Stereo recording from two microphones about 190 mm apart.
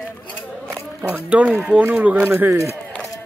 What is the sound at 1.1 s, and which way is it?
Speech, 10° right (ahead or behind).